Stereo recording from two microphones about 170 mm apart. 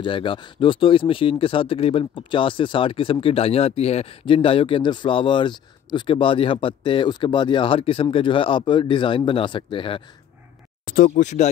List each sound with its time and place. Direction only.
0.0 s speech: 30° left (ahead or behind)
11.1 s speech: 45° left (ahead or behind)